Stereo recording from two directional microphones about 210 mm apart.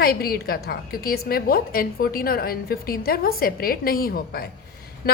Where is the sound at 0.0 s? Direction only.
45° left (ahead or behind).